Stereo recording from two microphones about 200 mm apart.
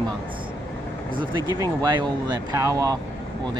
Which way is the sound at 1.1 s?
20° right (ahead or behind).